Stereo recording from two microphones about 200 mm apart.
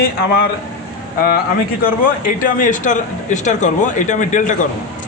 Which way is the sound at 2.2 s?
45° left (ahead or behind).